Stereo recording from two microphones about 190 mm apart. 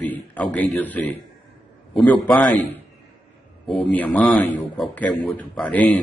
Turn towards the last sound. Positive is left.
turn(degrees=5)  # may be behind; listen again after turning